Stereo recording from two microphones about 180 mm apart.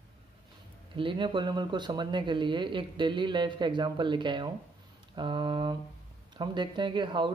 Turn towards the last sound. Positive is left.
turn(degrees=-25)  # may be behind; listen again after turning